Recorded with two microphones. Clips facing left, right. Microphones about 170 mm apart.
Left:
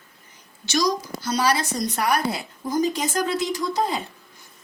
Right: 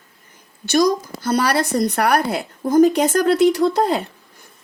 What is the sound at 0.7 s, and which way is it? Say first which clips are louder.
A woman's voice: right 6 dB; 55° right (ahead or behind).